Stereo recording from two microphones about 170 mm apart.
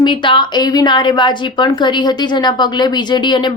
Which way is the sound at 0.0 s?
30° left (ahead or behind).